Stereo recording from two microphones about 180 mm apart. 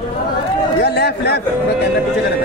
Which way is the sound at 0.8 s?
65° left (ahead or behind).